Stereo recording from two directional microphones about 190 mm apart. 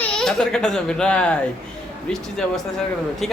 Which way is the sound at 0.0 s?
5° left (ahead or behind).